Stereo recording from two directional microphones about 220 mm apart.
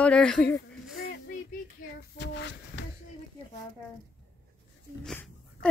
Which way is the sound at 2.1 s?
50° left (ahead or behind).